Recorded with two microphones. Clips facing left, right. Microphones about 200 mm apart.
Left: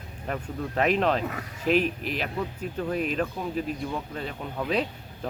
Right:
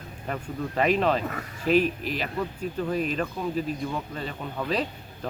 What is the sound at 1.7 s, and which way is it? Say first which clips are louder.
Speech: right 2 dB; 40° right (ahead or behind).